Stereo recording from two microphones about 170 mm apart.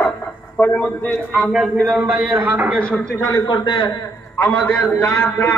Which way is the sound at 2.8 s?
10° left (ahead or behind).